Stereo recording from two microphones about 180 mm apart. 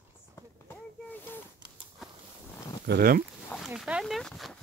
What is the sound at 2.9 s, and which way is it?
Speech, 55° right (ahead or behind).